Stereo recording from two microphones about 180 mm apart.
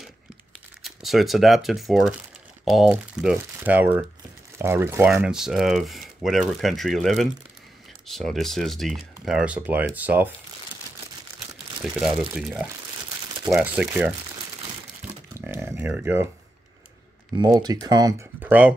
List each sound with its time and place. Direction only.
0.8 s speech: centre (ahead or behind)
11.8 s speech: centre (ahead or behind)
15.3 s speech: 15° right (ahead or behind)
17.4 s speech: 20° right (ahead or behind)
18.4 s speech: 10° right (ahead or behind)